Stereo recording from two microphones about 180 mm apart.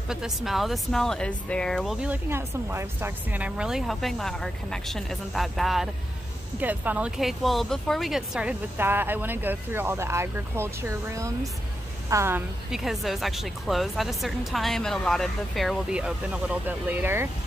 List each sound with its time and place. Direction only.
0.1 s speech: centre (ahead or behind)